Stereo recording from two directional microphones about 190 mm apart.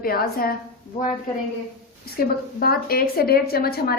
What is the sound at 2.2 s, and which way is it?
A woman's voice, 55° left (ahead or behind).